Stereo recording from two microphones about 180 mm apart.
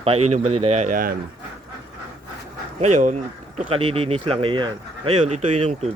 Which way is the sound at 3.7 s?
35° right (ahead or behind).